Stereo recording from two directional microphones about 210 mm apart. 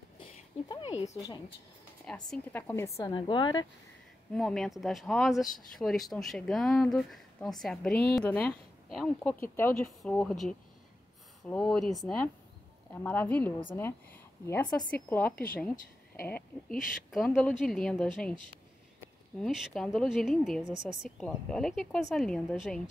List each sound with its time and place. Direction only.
0.7 s a sound: 20° left (ahead or behind)
1.1 s a woman's voice: 15° left (ahead or behind)
4.3 s a woman's voice: centre (ahead or behind)
19.4 s speech: centre (ahead or behind)